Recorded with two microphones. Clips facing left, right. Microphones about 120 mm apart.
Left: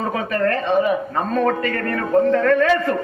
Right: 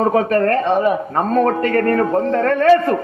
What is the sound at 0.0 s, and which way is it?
A man's voice, 45° right (ahead or behind).